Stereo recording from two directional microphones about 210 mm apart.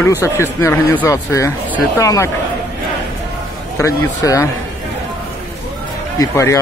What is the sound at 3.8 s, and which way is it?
Speech, 15° left (ahead or behind).